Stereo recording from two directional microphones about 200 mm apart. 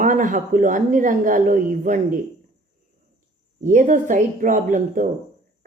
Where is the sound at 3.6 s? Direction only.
40° right (ahead or behind).